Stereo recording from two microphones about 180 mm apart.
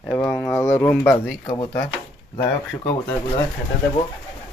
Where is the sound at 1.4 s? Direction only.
25° left (ahead or behind).